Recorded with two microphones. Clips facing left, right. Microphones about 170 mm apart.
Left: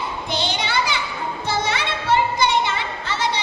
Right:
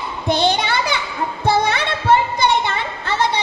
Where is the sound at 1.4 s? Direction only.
55° right (ahead or behind).